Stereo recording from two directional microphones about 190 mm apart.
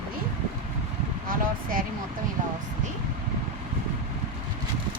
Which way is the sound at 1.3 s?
45° right (ahead or behind).